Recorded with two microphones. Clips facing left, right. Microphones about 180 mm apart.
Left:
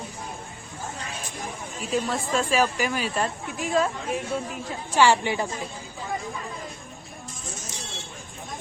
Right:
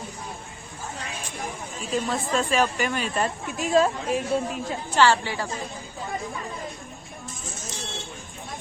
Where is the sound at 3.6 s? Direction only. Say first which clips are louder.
Right 3 dB; 25° right (ahead or behind).